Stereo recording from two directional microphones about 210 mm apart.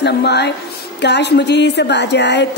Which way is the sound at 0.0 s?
50° left (ahead or behind).